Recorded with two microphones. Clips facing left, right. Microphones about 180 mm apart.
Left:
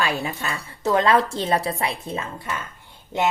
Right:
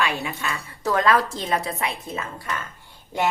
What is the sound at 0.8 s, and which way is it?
Speech, 25° left (ahead or behind).